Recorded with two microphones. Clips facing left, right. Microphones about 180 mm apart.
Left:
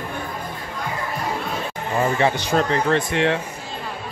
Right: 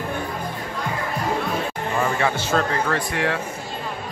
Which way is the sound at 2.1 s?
20° left (ahead or behind).